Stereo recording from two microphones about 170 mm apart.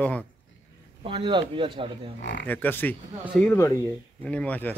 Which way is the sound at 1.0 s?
30° right (ahead or behind).